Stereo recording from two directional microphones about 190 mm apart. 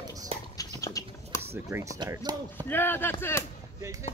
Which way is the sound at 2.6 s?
10° left (ahead or behind).